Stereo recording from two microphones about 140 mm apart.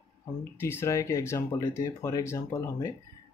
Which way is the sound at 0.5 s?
15° left (ahead or behind).